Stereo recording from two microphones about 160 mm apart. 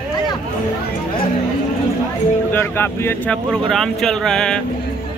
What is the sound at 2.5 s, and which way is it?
Speech, 15° left (ahead or behind).